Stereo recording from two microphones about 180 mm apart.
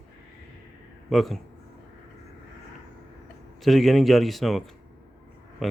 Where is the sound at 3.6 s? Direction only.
Centre (ahead or behind).